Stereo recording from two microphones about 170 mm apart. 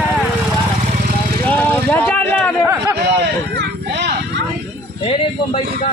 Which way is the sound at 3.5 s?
90° right.